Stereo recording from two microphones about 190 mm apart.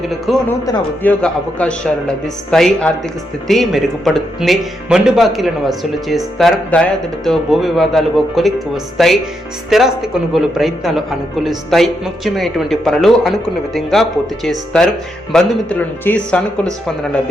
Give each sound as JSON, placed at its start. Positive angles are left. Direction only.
{"t": 0.3, "sound": "speech", "side_deg": 0}